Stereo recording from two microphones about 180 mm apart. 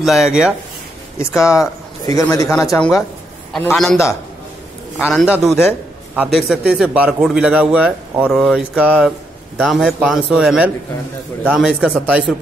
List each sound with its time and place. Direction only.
0.0 s a man's voice: centre (ahead or behind)
1.1 s speech: 15° left (ahead or behind)
3.7 s a man's voice: centre (ahead or behind)
5.1 s a man's voice: centre (ahead or behind)